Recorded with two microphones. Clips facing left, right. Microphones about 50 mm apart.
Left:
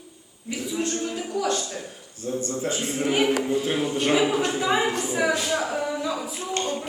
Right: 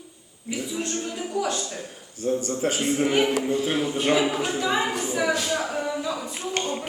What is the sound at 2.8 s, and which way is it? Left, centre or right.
Speech, centre.